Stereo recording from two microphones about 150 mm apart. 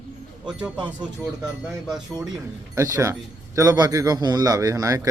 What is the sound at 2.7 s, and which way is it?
A man's voice, 20° right (ahead or behind).